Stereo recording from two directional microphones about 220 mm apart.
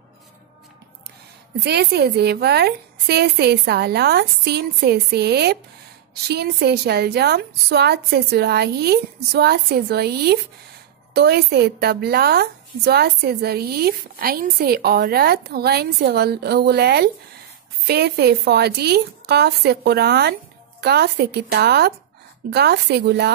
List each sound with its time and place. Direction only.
1.6 s a woman's voice: 50° right (ahead or behind)